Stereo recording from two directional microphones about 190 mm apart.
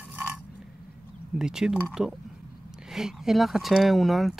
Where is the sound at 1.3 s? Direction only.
5° right (ahead or behind).